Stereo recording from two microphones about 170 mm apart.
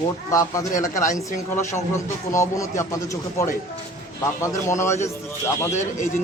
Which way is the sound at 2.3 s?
15° left (ahead or behind).